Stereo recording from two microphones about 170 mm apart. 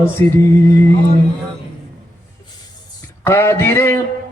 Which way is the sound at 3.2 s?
15° left (ahead or behind).